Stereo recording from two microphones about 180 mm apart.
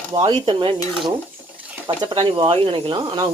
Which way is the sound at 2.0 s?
30° right (ahead or behind).